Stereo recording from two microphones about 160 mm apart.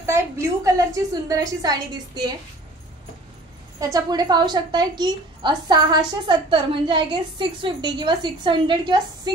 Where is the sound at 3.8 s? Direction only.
25° right (ahead or behind).